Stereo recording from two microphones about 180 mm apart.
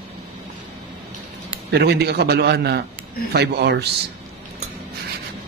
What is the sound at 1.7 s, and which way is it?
A man's voice, 65° right (ahead or behind).